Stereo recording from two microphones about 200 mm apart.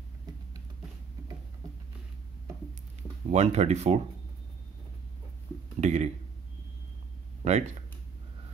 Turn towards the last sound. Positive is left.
turn(degrees=-35)  # may be behind; listen again after turning